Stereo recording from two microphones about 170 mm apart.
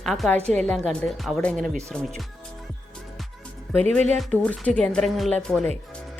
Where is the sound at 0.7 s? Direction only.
Centre (ahead or behind).